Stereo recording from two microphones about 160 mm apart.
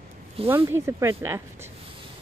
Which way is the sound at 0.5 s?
15° right (ahead or behind).